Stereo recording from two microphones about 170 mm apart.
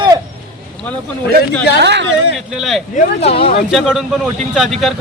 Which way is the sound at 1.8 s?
90° right.